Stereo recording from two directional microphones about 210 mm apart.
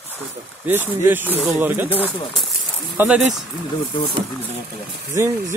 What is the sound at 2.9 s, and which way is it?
Speech, 5° right (ahead or behind).